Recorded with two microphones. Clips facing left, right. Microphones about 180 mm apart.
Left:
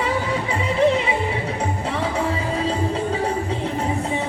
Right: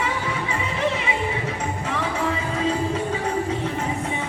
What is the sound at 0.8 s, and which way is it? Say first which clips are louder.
Music: left 7 dB; 35° left (ahead or behind).